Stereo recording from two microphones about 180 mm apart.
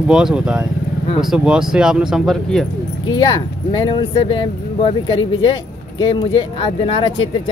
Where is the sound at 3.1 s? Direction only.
25° left (ahead or behind).